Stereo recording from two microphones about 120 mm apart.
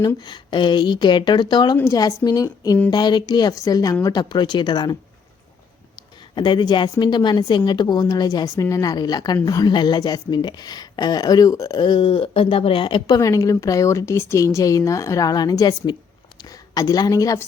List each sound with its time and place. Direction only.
0.2 s a woman's voice: 40° left (ahead or behind)
6.0 s a woman's voice: 40° left (ahead or behind)
13.1 s a woman's voice: 30° left (ahead or behind)